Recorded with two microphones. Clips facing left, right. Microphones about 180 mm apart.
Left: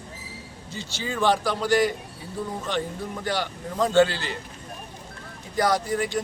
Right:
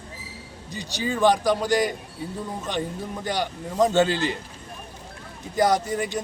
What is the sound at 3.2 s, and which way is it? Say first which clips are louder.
Speech: right 1 dB; 20° right (ahead or behind).